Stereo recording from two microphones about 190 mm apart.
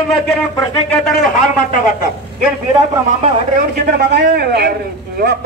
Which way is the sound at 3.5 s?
55° right (ahead or behind).